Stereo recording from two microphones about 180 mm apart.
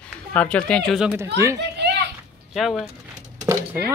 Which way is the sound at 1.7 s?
70° right (ahead or behind).